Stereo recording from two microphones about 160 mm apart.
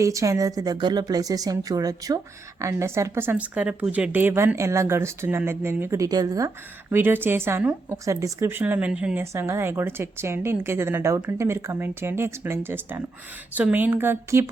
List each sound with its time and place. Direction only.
0.0 s speech: 20° right (ahead or behind)